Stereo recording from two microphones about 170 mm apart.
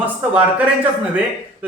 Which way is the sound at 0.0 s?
10° right (ahead or behind).